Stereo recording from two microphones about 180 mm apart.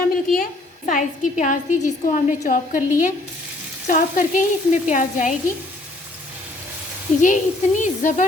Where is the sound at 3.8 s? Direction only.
45° left (ahead or behind).